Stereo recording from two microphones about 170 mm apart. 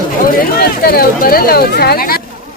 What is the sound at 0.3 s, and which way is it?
Speech, 55° left (ahead or behind).